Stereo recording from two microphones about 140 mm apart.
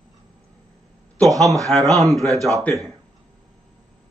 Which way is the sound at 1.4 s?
25° right (ahead or behind).